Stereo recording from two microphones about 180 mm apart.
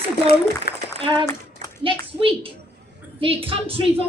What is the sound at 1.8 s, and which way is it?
A woman's voice, 30° right (ahead or behind).